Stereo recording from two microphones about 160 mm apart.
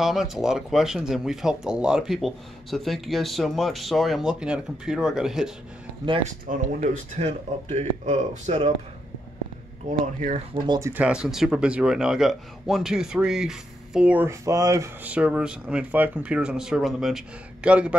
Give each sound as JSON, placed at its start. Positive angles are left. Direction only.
{"t": 0.0, "sound": "speech", "side_deg": 0}
{"t": 6.2, "sound": "speech", "side_deg": -50}
{"t": 9.8, "sound": "speech", "side_deg": -50}
{"t": 10.8, "sound": "speech", "side_deg": -10}
{"t": 15.0, "sound": "a man's voice", "side_deg": -10}